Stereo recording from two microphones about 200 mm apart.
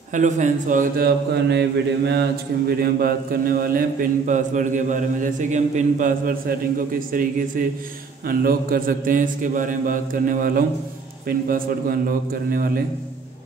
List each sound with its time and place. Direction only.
0.1 s mantra: 40° right (ahead or behind)